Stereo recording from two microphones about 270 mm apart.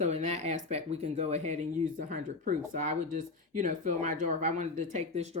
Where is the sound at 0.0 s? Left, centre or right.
Right.